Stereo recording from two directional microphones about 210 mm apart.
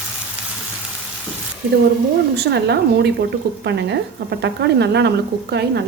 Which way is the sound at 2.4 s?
50° right (ahead or behind).